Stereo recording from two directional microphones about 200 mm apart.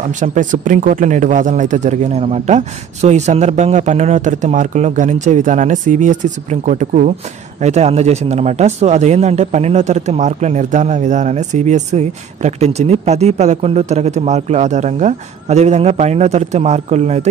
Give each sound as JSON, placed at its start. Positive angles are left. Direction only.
{"t": 0.1, "sound": "speech", "side_deg": -40}